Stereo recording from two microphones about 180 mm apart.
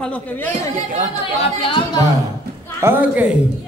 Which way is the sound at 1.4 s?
30° left (ahead or behind).